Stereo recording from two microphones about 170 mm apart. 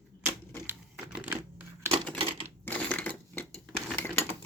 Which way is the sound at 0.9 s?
10° right (ahead or behind).